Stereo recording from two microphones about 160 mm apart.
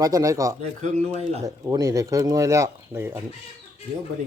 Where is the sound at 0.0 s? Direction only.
20° right (ahead or behind).